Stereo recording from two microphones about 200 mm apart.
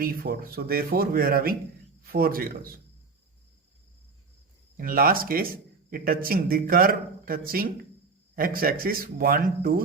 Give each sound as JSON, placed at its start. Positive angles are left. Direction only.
{"t": 0.0, "sound": "a man's voice", "side_deg": -45}
{"t": 4.8, "sound": "a man's voice", "side_deg": -45}